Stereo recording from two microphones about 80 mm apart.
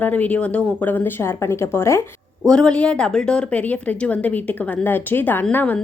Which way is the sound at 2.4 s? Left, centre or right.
Centre.